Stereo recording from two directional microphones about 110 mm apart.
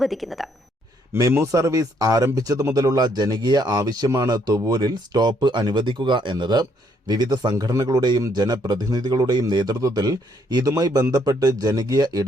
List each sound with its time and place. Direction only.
0.0 s speech: centre (ahead or behind)
1.1 s speech: 20° right (ahead or behind); by 12.2 s 40° right (ahead or behind)